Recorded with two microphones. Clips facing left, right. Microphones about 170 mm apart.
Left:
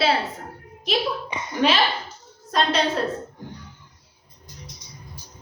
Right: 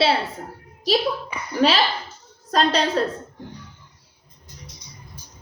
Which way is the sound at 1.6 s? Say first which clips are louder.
Right 2 dB; 35° right (ahead or behind).